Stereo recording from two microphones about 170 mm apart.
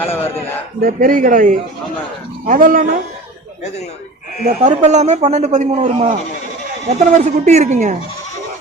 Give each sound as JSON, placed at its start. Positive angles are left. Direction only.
{"t": 0.0, "sound": "speech", "side_deg": 15}
{"t": 0.8, "sound": "speech", "side_deg": -55}
{"t": 4.4, "sound": "a man's voice", "side_deg": -45}